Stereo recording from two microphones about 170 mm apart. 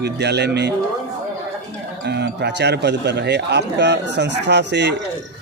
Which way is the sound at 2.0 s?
75° right (ahead or behind).